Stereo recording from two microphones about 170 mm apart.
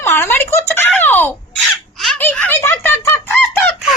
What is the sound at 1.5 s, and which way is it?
Chicken, centre (ahead or behind).